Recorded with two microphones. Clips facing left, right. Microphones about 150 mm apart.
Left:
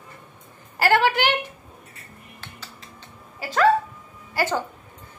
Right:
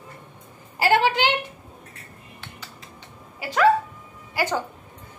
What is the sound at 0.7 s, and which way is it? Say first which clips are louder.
Speech: even; 20° right (ahead or behind).